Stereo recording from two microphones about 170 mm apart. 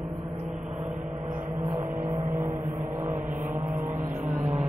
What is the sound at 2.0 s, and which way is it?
Vehicle, 15° right (ahead or behind).